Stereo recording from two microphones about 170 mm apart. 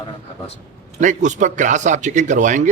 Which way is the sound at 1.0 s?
45° right (ahead or behind).